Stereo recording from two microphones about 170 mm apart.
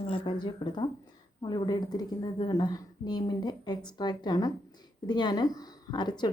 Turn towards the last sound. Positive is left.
turn(degrees=25)  # may be behind; listen again after turning